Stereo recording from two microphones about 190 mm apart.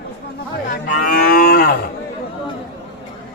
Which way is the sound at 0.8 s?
45° left (ahead or behind).